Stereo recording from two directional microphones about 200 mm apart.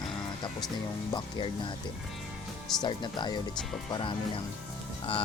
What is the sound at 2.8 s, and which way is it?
Speech, 20° left (ahead or behind).